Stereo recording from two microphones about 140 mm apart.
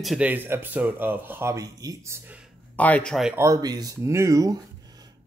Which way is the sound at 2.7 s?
10° left (ahead or behind).